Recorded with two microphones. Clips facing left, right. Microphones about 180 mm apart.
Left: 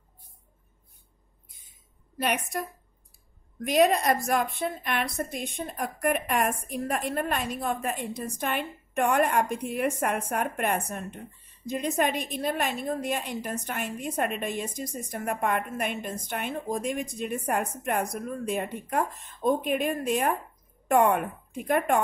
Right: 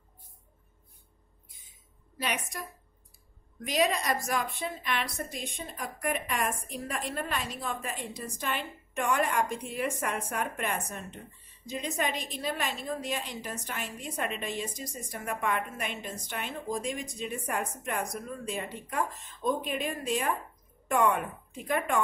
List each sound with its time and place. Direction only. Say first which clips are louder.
2.1 s a woman's voice: left 6 dB; 55° left (ahead or behind)
3.6 s a woman's voice: left 6 dB; 55° left (ahead or behind)